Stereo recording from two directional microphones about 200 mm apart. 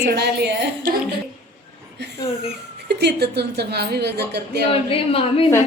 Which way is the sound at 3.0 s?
55° right (ahead or behind).